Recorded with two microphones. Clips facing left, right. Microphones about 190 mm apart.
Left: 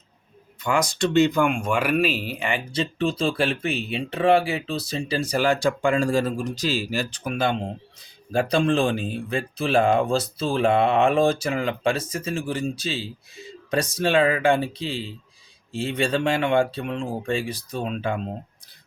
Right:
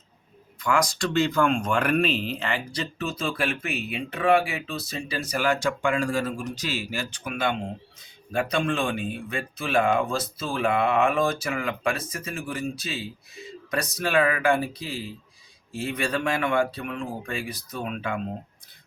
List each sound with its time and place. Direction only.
0.6 s speech: 20° left (ahead or behind)
2.7 s speech: 30° left (ahead or behind)